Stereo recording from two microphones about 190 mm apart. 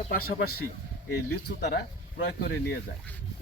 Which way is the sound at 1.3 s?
65° left (ahead or behind).